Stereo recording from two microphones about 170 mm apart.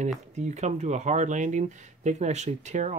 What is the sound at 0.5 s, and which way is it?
Speech, 45° right (ahead or behind).